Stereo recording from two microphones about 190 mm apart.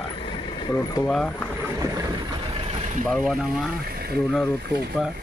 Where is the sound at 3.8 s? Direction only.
55° right (ahead or behind).